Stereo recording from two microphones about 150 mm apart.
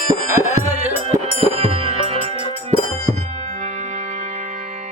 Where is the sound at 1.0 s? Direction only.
45° right (ahead or behind).